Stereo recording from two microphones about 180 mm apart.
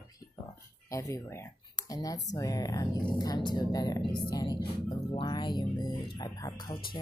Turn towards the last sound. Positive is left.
turn(degrees=20)  # may be behind; listen again after turning